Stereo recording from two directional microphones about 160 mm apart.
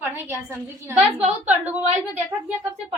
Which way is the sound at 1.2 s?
45° right (ahead or behind).